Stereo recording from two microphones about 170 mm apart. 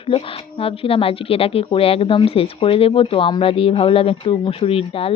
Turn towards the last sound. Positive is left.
turn(degrees=35)  # may be behind; listen again after turning